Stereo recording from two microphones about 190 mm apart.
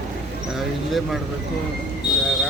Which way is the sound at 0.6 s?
Centre (ahead or behind).